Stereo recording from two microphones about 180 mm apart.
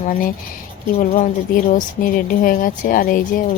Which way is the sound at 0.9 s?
45° left (ahead or behind).